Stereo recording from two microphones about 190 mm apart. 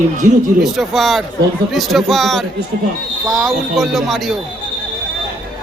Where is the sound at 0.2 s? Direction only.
40° right (ahead or behind).